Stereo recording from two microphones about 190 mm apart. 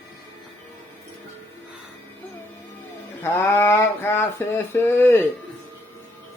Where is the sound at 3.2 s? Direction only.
10° left (ahead or behind).